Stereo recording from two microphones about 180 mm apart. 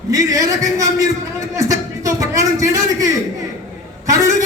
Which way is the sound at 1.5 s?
20° right (ahead or behind).